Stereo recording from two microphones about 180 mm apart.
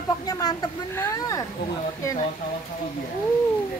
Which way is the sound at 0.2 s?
20° left (ahead or behind).